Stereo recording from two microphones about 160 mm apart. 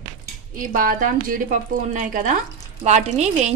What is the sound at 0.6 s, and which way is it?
A woman's voice, 60° right (ahead or behind).